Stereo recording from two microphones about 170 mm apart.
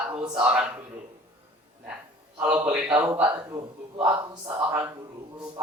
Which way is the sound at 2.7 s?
10° right (ahead or behind).